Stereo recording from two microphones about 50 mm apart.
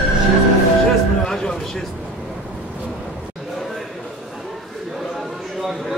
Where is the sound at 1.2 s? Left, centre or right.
Centre.